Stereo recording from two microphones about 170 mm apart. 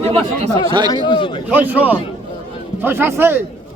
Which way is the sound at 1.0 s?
30° left (ahead or behind).